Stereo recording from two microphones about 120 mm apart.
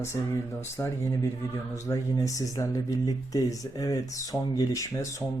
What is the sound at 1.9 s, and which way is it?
Speech, 25° left (ahead or behind).